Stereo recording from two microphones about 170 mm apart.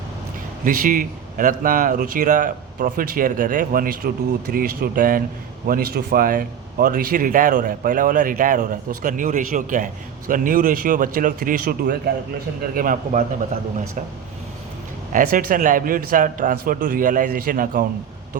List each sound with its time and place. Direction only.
0.6 s speech: 50° right (ahead or behind)
15.1 s a man's voice: 50° right (ahead or behind)